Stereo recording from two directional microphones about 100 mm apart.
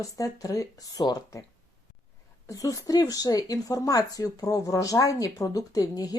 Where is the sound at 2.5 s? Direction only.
35° left (ahead or behind).